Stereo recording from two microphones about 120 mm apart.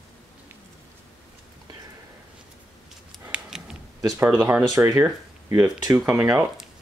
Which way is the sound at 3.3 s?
5° right (ahead or behind).